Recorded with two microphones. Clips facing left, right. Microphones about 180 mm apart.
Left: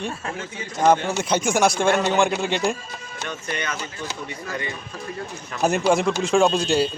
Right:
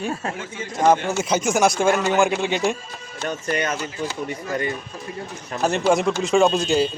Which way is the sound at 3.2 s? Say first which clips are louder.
Right 6 dB; 40° right (ahead or behind).